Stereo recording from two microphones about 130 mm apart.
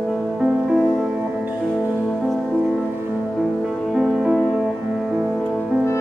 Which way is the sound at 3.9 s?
5° right (ahead or behind).